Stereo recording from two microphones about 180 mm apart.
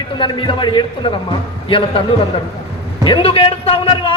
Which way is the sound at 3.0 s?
30° left (ahead or behind).